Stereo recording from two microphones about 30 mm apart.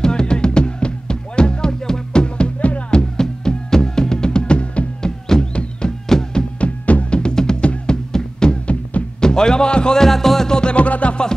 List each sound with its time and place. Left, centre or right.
0.0 s music: left
2.2 s music: left
2.9 s music: left
5.0 s music: left
5.5 s music: left
6.1 s music: centre
6.6 s music: left
9.9 s music: centre
10.5 s music: left